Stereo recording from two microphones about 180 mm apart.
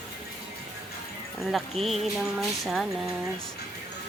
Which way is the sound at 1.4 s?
Centre (ahead or behind).